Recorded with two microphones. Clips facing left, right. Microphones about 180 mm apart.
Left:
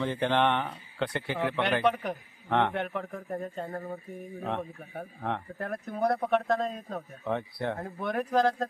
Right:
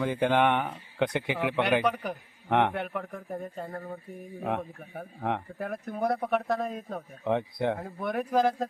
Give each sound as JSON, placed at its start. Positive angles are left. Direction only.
{"t": 0.0, "sound": "speech", "side_deg": -10}
{"t": 1.8, "sound": "speech", "side_deg": 0}
{"t": 2.5, "sound": "speech", "side_deg": -15}
{"t": 2.7, "sound": "speech", "side_deg": -5}
{"t": 4.4, "sound": "speech", "side_deg": -10}
{"t": 7.8, "sound": "speech", "side_deg": 0}